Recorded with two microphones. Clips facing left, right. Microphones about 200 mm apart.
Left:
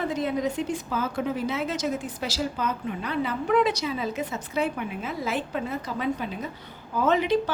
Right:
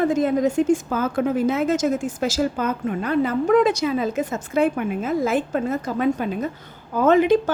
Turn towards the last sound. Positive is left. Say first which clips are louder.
# right 7 dB
turn(degrees=-50)  # may be behind; listen again after turning